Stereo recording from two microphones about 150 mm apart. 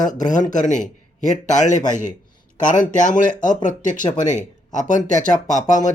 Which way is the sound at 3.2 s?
60° left (ahead or behind).